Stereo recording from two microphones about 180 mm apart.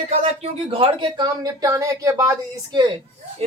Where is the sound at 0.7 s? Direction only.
30° right (ahead or behind).